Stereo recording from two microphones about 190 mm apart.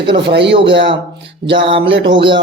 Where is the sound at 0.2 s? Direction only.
65° right (ahead or behind).